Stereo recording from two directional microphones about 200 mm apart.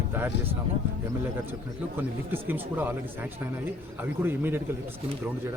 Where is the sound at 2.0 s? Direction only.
10° right (ahead or behind).